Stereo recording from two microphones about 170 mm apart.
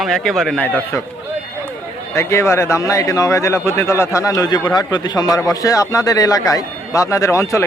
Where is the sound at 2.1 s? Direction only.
15° left (ahead or behind).